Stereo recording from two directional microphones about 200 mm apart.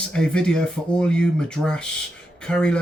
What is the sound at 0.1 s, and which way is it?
Speech, 5° left (ahead or behind).